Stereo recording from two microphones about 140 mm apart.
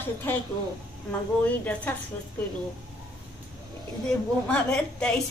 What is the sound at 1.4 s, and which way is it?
Speech, 10° left (ahead or behind).